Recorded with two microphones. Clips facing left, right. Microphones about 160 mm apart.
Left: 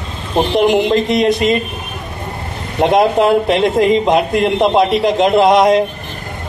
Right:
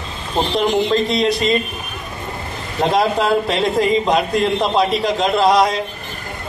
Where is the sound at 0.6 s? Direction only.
20° left (ahead or behind).